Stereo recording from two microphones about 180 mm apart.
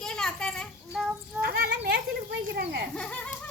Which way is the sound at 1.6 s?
65° right (ahead or behind).